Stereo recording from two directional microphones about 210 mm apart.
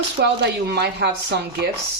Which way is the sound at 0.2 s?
55° right (ahead or behind).